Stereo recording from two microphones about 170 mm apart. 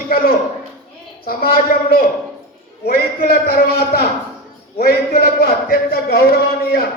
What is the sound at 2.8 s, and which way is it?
Speech, 60° left (ahead or behind).